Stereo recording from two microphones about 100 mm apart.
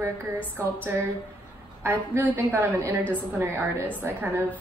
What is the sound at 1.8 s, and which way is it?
A woman's voice, 20° right (ahead or behind).